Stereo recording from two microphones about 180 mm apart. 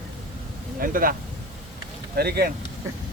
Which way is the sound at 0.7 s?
50° right (ahead or behind).